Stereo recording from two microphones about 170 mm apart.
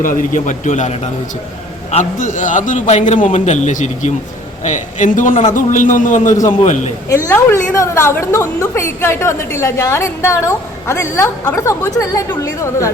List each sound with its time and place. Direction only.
0.0 s a man's voice: 50° left (ahead or behind)
7.1 s a woman's voice: 15° left (ahead or behind)